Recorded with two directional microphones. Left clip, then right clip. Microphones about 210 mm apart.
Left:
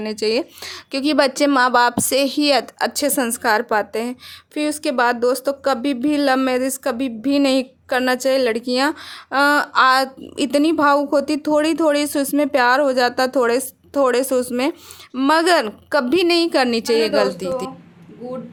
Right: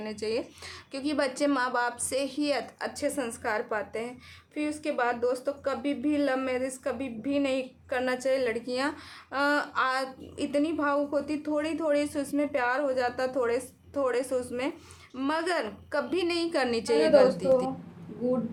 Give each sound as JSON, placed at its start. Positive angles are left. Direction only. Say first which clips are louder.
{"t": 0.0, "sound": "a woman's voice", "louder": "left 11 dB", "side_deg": 40}